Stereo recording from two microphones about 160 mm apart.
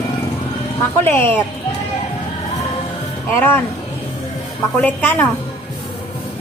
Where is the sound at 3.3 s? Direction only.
15° left (ahead or behind).